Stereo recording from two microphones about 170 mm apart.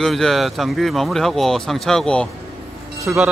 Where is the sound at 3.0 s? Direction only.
5° right (ahead or behind).